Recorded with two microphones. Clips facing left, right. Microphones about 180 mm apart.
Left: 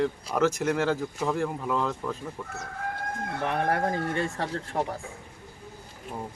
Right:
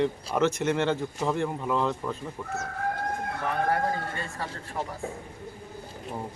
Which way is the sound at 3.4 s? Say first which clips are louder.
Left 1 dB; 70° left (ahead or behind).